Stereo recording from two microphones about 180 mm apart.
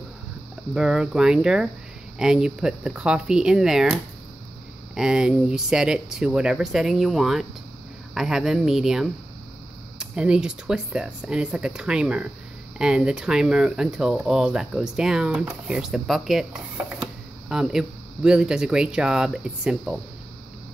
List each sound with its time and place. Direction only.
0.7 s speech: 5° right (ahead or behind)